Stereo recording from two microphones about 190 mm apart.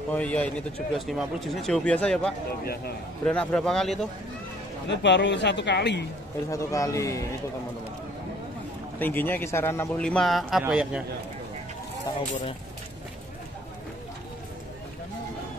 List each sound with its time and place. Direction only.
0.1 s a man's voice: 5° left (ahead or behind)
4.8 s speech: 65° left (ahead or behind)
6.5 s speech: 15° left (ahead or behind)
9.0 s a man's voice: 10° left (ahead or behind)